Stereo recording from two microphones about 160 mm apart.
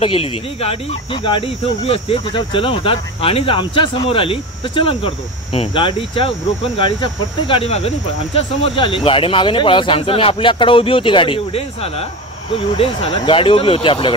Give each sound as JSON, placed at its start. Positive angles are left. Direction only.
{"t": 0.0, "sound": "speech", "side_deg": 35}